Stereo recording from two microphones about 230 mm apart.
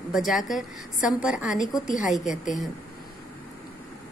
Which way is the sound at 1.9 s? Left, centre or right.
Left.